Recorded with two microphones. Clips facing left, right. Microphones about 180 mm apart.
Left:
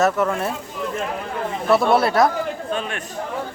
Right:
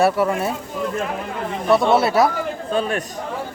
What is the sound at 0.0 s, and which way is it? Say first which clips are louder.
Speech: right 2 dB; 10° right (ahead or behind).